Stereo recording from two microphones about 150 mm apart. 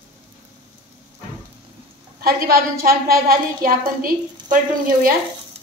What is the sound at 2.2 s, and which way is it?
A woman's voice, 85° right.